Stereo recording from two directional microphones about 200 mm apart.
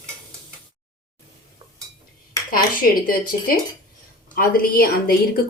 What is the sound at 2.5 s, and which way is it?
A woman's voice, 45° left (ahead or behind).